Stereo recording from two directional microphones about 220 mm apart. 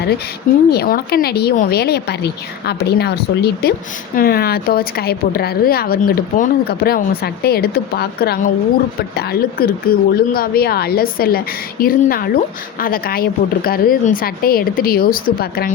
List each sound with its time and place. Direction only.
0.7 s speech: 45° left (ahead or behind)